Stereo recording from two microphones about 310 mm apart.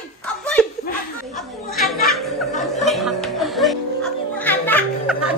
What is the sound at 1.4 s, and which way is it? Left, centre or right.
Music, centre.